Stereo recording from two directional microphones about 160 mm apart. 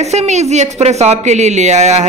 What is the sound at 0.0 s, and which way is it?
Speech, 45° right (ahead or behind).